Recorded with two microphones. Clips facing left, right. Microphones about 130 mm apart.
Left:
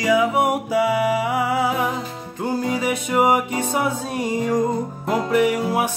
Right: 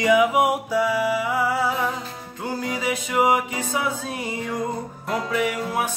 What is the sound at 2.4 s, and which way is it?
Music, 25° left (ahead or behind).